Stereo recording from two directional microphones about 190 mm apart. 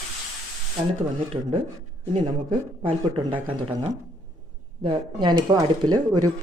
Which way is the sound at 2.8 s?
30° right (ahead or behind).